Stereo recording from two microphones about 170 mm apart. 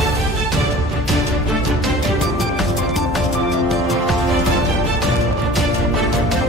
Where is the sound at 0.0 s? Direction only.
Centre (ahead or behind).